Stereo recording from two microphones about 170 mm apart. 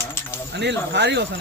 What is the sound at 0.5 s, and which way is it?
Speech, 90° right.